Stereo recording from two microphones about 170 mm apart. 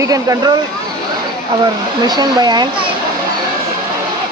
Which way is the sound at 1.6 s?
25° right (ahead or behind).